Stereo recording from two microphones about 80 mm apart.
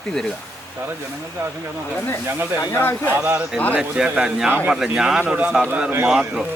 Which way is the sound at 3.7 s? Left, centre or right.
Centre.